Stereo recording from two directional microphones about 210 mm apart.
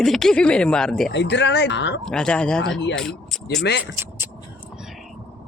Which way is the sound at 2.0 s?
5° left (ahead or behind).